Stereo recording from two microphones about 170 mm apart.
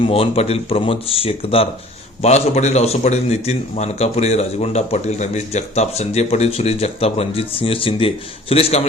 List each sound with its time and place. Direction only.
0.0 s a man's voice: 35° left (ahead or behind)